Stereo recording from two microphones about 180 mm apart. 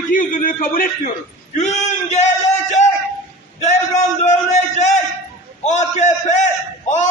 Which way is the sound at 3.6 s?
40° left (ahead or behind).